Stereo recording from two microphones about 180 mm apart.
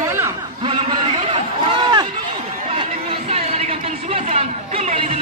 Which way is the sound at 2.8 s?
35° right (ahead or behind).